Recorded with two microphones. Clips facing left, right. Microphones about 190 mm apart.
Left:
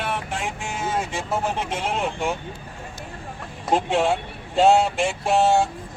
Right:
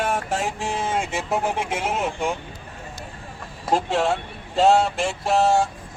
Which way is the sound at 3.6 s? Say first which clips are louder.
Left 1 dB; centre (ahead or behind).